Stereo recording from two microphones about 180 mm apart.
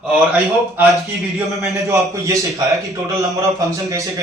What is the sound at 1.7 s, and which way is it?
A man's voice, 15° right (ahead or behind).